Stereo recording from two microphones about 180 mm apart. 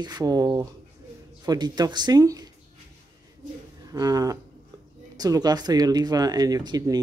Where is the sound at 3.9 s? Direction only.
20° right (ahead or behind).